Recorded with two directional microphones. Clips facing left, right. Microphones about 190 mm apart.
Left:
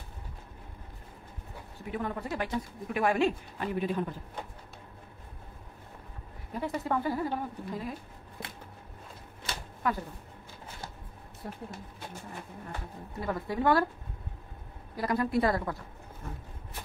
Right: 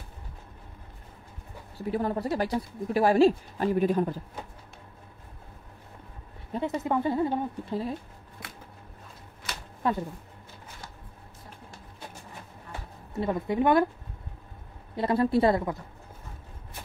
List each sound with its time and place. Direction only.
1.8 s speech: 35° right (ahead or behind)
6.5 s speech: 20° right (ahead or behind)
9.8 s speech: 30° right (ahead or behind)
11.4 s speech: 65° left (ahead or behind)
13.2 s speech: 20° right (ahead or behind)
15.0 s speech: 30° right (ahead or behind)